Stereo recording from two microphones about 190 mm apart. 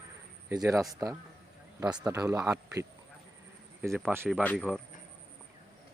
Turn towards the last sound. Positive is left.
turn(degrees=5)  # may be behind; listen again after turning